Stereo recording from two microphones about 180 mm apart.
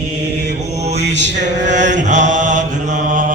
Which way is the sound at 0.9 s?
75° right (ahead or behind).